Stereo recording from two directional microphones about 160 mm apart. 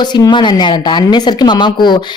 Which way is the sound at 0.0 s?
25° left (ahead or behind).